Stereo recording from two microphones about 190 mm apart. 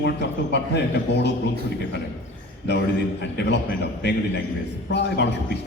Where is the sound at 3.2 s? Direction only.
65° left (ahead or behind).